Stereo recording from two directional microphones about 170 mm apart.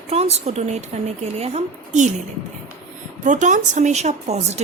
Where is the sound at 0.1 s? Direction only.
40° right (ahead or behind).